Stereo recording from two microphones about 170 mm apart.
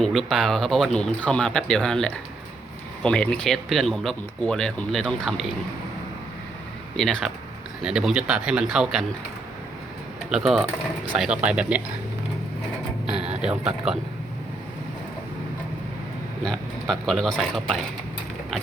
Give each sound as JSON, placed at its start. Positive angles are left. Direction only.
{"t": 0.0, "sound": "speech", "side_deg": 0}
{"t": 6.9, "sound": "speech", "side_deg": 0}
{"t": 10.2, "sound": "speech", "side_deg": 0}
{"t": 13.1, "sound": "a sound", "side_deg": -35}
{"t": 13.4, "sound": "speech", "side_deg": -5}
{"t": 16.4, "sound": "speech", "side_deg": 5}